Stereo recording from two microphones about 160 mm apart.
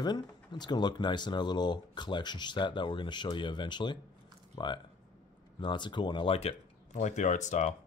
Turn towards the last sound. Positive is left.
turn(degrees=45)  # may be behind; listen again after turning